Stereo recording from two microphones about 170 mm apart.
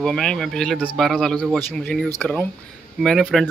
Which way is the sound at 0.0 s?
5° left (ahead or behind).